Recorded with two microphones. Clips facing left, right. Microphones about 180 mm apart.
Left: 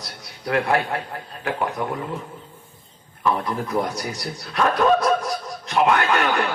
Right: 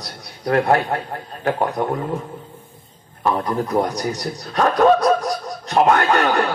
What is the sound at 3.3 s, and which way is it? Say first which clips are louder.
A man's voice: right 4 dB; 35° right (ahead or behind).